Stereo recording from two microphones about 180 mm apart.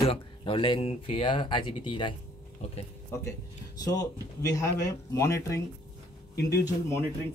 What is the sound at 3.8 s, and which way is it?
Speech, 20° left (ahead or behind).